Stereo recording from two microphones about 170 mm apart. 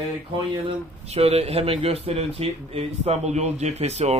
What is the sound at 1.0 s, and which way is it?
Speech, 35° right (ahead or behind).